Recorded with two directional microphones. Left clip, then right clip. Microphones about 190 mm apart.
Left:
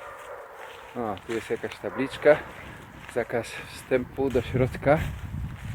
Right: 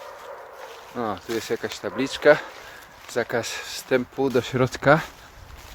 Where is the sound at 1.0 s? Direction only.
10° right (ahead or behind).